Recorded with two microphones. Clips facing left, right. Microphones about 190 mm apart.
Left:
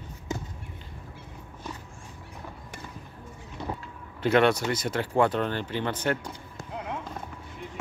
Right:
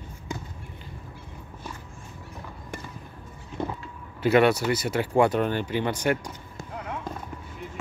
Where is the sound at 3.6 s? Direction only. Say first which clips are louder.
Right 4 dB; 50° right (ahead or behind).